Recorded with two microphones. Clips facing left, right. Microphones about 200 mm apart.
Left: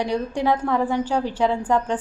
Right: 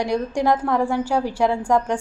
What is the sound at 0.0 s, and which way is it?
A woman's voice, 10° right (ahead or behind).